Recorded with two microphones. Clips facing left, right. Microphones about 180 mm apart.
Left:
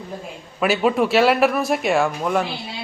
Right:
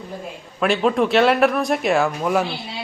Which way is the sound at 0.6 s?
5° left (ahead or behind).